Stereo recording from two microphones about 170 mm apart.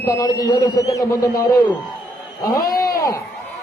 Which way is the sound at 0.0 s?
20° left (ahead or behind).